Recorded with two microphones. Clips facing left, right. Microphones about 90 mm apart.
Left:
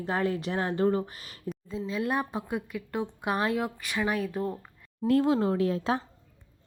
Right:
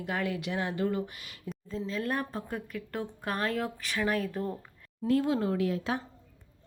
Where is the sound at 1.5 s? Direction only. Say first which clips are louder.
Left 2 dB; 5° left (ahead or behind).